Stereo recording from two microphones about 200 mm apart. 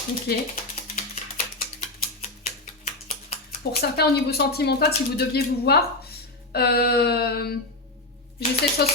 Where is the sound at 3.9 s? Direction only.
55° left (ahead or behind).